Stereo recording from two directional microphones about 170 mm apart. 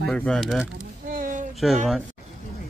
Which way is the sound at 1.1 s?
50° right (ahead or behind).